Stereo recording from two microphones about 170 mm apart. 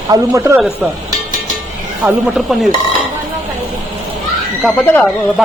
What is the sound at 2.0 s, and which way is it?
Speech, centre (ahead or behind).